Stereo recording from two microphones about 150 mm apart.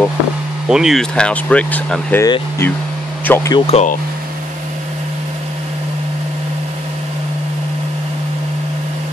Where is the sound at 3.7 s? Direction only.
45° left (ahead or behind).